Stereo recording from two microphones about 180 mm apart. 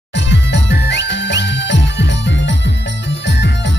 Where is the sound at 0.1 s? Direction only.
80° left.